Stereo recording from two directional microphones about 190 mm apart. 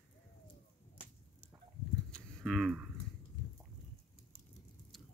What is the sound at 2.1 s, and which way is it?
Livestock, centre (ahead or behind).